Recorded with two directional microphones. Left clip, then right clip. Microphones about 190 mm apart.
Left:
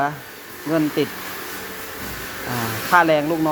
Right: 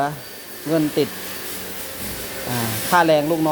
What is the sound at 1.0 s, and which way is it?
Speech, 25° right (ahead or behind).